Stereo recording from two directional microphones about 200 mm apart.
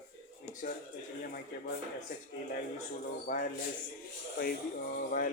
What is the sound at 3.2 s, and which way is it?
Speech, 40° left (ahead or behind).